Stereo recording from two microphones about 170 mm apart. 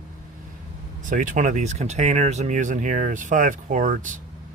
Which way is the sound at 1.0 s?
50° right (ahead or behind).